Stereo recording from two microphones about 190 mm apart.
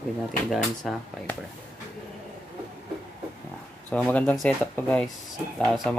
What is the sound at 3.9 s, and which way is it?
Speech, 5° left (ahead or behind).